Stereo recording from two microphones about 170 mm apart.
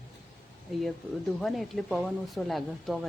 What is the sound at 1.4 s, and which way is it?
Speech, centre (ahead or behind).